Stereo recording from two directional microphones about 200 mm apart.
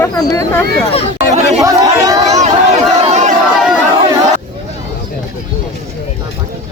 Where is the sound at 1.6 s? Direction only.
15° right (ahead or behind).